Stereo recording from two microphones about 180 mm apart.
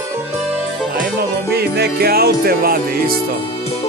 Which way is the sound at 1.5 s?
60° right (ahead or behind).